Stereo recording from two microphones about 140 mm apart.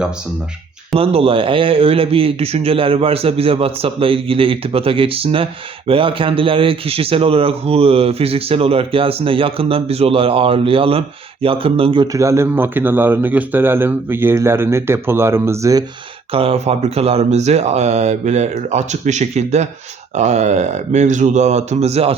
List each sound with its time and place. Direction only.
0.9 s speech: 40° right (ahead or behind)
12.1 s speech: 20° right (ahead or behind)
16.3 s speech: 45° right (ahead or behind)